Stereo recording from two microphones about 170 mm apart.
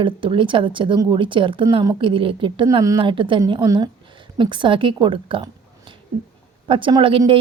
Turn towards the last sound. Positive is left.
turn(degrees=-30)  # may be behind; listen again after turning